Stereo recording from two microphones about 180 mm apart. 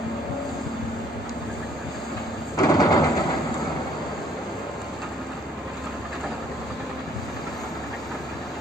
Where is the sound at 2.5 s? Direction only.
20° left (ahead or behind).